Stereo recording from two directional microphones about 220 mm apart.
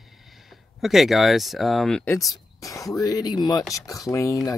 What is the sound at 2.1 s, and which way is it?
Speech, 15° left (ahead or behind).